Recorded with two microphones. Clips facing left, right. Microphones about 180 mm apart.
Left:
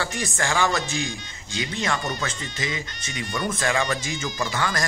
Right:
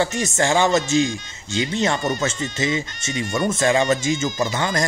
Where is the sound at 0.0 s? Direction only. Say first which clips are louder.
Right 7 dB; 20° right (ahead or behind).